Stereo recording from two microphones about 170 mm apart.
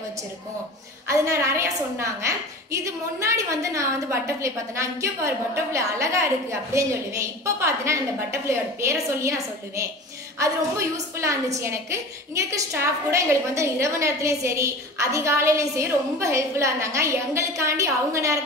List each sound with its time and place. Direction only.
1.1 s a woman's voice: 15° right (ahead or behind)
10.4 s a woman's voice: 15° right (ahead or behind)